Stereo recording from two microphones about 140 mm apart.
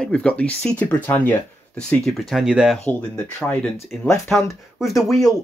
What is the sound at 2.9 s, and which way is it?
Speech, 10° left (ahead or behind).